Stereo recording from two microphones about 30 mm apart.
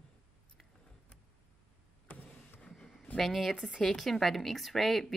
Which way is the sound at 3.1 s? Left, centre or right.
Centre.